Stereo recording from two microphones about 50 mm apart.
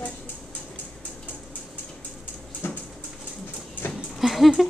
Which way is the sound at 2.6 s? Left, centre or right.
Left.